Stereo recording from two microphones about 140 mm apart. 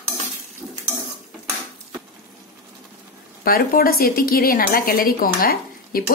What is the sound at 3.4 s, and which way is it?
A woman's voice, 90° left.